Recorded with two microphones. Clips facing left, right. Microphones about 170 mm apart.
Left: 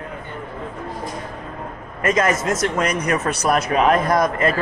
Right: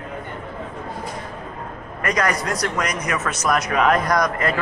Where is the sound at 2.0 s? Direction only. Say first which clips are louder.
Left 3 dB; 25° left (ahead or behind).